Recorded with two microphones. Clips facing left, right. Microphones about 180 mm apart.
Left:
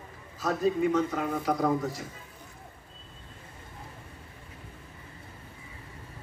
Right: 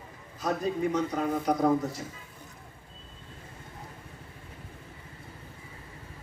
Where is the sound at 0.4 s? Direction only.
20° right (ahead or behind).